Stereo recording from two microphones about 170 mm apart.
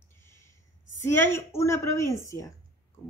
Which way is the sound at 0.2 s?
15° left (ahead or behind).